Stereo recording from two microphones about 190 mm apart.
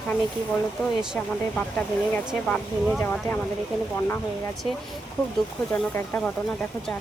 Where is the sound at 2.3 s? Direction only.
Centre (ahead or behind).